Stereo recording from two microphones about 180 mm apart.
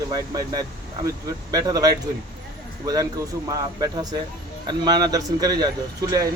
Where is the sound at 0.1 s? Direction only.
20° right (ahead or behind).